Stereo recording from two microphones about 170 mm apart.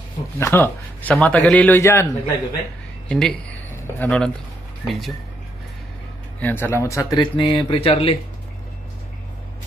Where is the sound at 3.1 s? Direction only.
5° left (ahead or behind).